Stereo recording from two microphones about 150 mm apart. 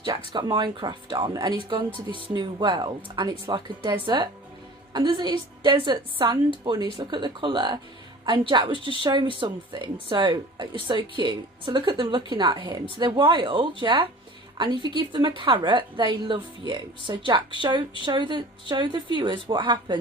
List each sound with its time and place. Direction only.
0.3 s speech: 30° right (ahead or behind)